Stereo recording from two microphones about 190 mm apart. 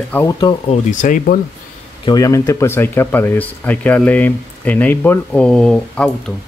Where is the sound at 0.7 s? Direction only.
40° left (ahead or behind).